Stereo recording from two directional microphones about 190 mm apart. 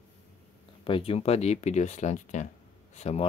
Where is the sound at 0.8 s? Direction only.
30° left (ahead or behind).